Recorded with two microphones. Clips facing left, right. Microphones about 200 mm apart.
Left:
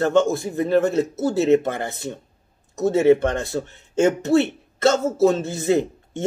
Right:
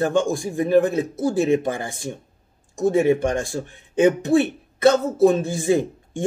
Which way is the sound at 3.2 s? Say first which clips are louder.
Even; 15° right (ahead or behind).